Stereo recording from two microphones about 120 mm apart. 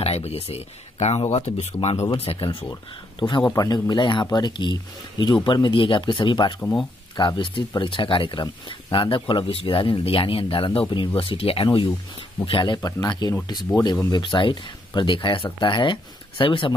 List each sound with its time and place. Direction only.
0.0 s speech: 60° left (ahead or behind)
2.7 s speech: 40° left (ahead or behind)
6.6 s speech: 5° left (ahead or behind)
7.2 s speech: 40° left (ahead or behind)